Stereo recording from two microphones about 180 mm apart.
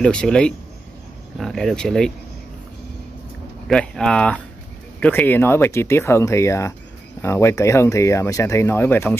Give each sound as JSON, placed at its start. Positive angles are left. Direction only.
{"t": 0.0, "sound": "speech", "side_deg": 5}
{"t": 3.6, "sound": "speech", "side_deg": 5}